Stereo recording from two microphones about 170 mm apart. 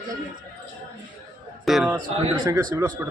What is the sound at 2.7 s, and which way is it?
Speech, 15° right (ahead or behind).